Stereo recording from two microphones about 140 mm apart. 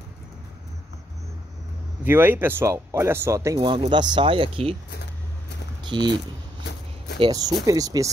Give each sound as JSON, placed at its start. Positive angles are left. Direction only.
{"t": 2.0, "sound": "speech", "side_deg": -15}
{"t": 5.9, "sound": "speech", "side_deg": -35}
{"t": 7.2, "sound": "speech", "side_deg": -25}